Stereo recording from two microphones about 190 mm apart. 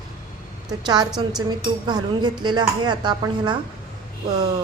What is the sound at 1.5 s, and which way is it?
Speech, 25° right (ahead or behind).